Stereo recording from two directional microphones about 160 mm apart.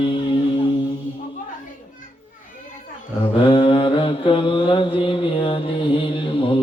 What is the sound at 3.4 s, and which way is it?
Mantra, 35° left (ahead or behind).